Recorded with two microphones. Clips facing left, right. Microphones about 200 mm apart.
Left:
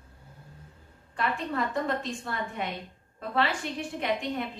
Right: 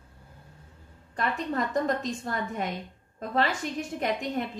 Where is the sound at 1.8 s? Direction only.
40° right (ahead or behind).